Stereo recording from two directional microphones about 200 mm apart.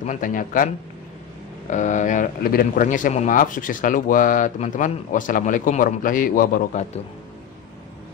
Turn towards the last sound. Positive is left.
turn(degrees=40)  # may be behind; listen again after turning